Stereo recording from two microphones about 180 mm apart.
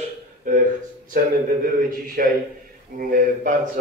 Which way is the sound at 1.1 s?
50° right (ahead or behind).